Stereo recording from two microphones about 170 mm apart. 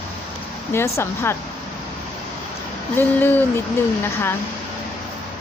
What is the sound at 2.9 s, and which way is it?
Speech, 10° left (ahead or behind).